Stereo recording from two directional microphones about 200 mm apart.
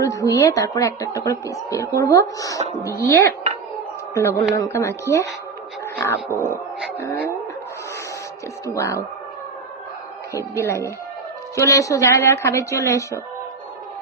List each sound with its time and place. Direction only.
0.0 s a woman's voice: 15° left (ahead or behind)
5.8 s a sound: 10° left (ahead or behind)
7.0 s a woman's voice: 10° left (ahead or behind)
8.6 s a woman's voice: 15° left (ahead or behind)
10.3 s a woman's voice: 15° left (ahead or behind)